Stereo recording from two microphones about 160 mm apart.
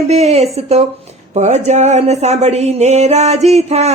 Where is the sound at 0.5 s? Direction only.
40° right (ahead or behind).